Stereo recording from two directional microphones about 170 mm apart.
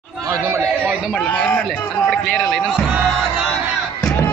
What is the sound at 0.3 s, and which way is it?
Chatter, 15° right (ahead or behind).